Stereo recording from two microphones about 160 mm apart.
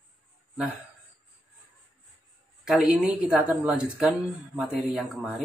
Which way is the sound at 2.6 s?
5° right (ahead or behind).